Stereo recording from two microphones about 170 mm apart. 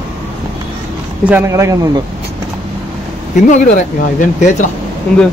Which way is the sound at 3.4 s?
45° left (ahead or behind).